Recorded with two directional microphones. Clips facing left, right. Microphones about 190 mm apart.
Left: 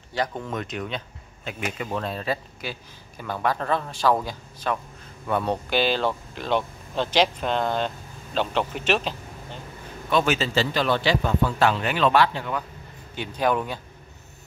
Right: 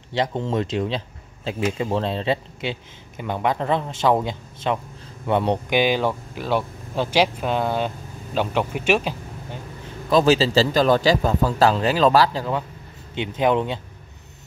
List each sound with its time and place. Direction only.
0.1 s speech: 25° right (ahead or behind)
10.0 s a man's voice: 35° right (ahead or behind)
13.1 s speech: 20° right (ahead or behind)